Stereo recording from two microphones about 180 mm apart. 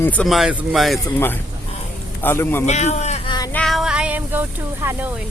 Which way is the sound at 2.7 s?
40° left (ahead or behind).